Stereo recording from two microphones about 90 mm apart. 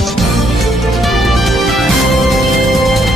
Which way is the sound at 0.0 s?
Centre (ahead or behind).